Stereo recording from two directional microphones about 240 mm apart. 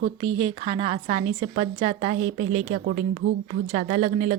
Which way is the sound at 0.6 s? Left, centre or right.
Right.